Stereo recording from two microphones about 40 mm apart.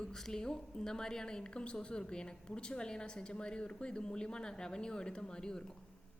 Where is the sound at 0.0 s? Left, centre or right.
Centre.